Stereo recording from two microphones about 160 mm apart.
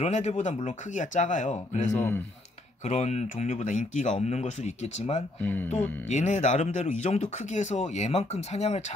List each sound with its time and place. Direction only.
0.0 s speech: 45° left (ahead or behind)
1.9 s speech: 15° left (ahead or behind)
2.9 s speech: 45° left (ahead or behind)
5.4 s speech: 10° left (ahead or behind)
5.7 s speech: 45° left (ahead or behind)